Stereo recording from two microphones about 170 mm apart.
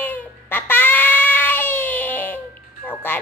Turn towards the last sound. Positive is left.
turn(degrees=10)  # may be behind; listen again after turning